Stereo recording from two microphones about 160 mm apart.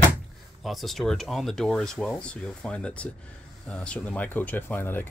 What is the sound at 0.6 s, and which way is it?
Speech, centre (ahead or behind).